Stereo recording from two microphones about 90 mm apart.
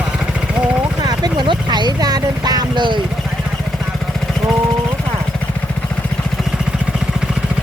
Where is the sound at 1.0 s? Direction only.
50° right (ahead or behind).